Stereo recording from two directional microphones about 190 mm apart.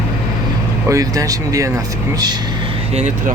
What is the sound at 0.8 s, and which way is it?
Speech, 15° right (ahead or behind).